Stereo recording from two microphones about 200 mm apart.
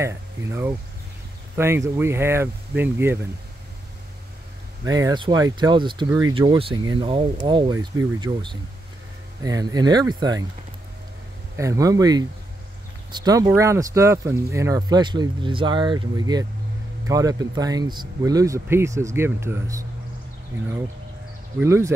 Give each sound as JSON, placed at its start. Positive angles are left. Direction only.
{"t": 0.4, "sound": "speech", "side_deg": -10}
{"t": 4.8, "sound": "speech", "side_deg": -20}
{"t": 11.5, "sound": "speech", "side_deg": -15}
{"t": 21.5, "sound": "speech", "side_deg": -15}